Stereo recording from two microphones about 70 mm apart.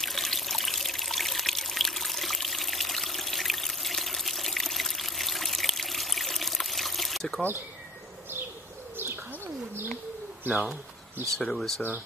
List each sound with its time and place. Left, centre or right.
0.0 s trickle: centre
8.9 s bird: right
10.4 s speech: right
11.3 s speech: centre